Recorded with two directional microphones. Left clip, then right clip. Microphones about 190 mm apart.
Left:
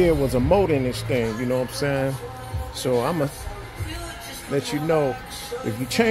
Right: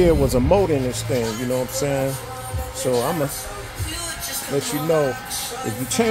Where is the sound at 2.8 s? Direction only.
20° left (ahead or behind).